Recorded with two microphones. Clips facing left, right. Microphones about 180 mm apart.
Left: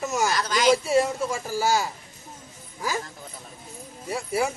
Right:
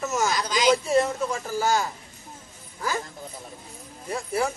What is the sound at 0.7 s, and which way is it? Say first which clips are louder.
A man's voice: even; 10° left (ahead or behind).